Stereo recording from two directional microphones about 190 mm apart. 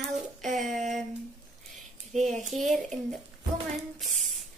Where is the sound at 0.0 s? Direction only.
Centre (ahead or behind).